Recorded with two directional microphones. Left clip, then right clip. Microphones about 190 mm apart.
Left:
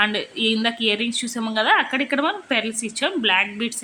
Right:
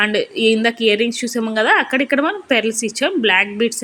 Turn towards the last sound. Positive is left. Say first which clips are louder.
# right 5 dB
turn(degrees=-15)  # may be behind; listen again after turning